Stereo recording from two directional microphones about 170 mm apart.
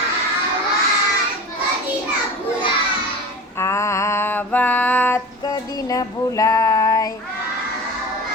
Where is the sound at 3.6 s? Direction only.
15° left (ahead or behind).